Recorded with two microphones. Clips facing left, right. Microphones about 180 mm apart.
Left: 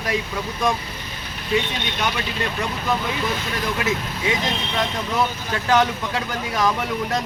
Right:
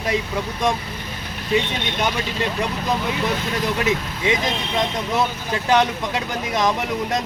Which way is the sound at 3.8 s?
20° right (ahead or behind).